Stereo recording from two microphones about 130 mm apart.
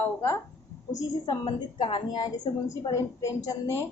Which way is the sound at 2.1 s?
30° left (ahead or behind).